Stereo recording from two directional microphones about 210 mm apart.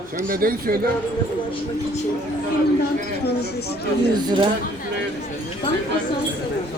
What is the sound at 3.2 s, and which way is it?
Speech, 50° left (ahead or behind).